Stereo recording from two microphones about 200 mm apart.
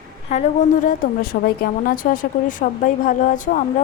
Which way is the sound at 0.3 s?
35° left (ahead or behind).